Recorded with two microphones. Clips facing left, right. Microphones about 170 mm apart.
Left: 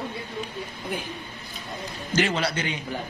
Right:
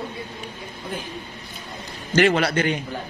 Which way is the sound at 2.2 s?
60° right (ahead or behind).